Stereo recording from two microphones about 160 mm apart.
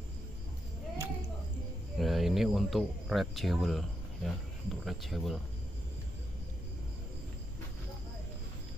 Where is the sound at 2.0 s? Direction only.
Centre (ahead or behind).